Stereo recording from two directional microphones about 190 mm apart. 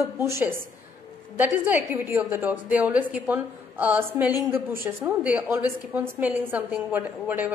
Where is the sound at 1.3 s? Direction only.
10° right (ahead or behind).